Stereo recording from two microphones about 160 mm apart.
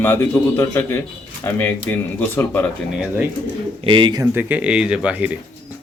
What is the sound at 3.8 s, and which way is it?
Speech, 30° right (ahead or behind).